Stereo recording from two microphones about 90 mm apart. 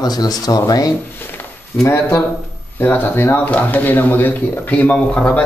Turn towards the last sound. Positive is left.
turn(degrees=15)  # may be behind; listen again after turning